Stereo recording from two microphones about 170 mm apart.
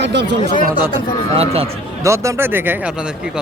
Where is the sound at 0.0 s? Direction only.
90° right.